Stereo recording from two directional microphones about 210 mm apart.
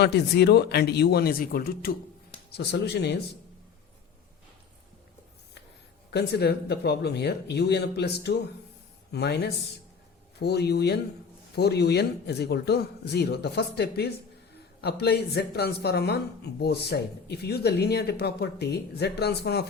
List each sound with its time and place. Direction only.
0.0 s a woman's voice: 55° left (ahead or behind)
6.1 s a woman's voice: 50° left (ahead or behind)